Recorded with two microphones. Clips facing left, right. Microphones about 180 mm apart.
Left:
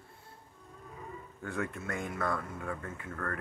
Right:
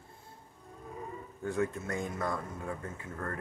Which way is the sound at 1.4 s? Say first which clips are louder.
Right 4 dB; 35° right (ahead or behind).